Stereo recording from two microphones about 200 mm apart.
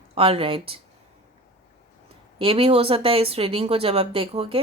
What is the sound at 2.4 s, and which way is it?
A woman's voice, 25° right (ahead or behind).